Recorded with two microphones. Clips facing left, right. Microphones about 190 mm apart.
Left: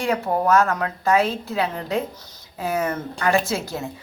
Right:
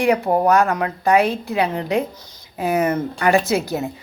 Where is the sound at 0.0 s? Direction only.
15° right (ahead or behind).